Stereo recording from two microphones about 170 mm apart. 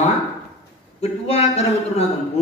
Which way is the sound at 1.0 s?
40° left (ahead or behind).